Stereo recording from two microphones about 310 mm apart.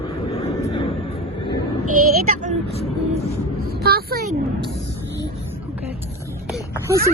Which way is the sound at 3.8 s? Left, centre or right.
Right.